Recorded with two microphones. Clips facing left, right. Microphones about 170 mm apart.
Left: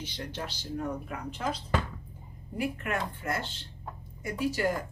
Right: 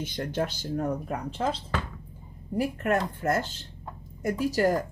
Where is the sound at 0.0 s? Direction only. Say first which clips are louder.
Right 8 dB; 50° right (ahead or behind).